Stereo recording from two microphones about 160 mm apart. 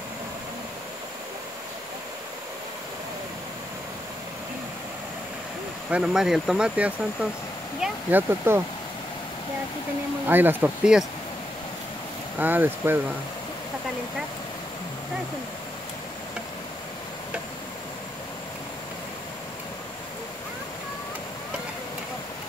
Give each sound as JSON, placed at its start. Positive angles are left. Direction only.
{"t": 5.9, "sound": "speech", "side_deg": -5}
{"t": 10.2, "sound": "speech", "side_deg": -10}
{"t": 12.4, "sound": "speech", "side_deg": -10}